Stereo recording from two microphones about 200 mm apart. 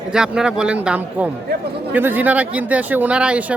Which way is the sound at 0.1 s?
5° right (ahead or behind).